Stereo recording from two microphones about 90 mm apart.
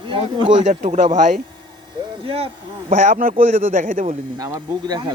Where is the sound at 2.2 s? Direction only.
90° right.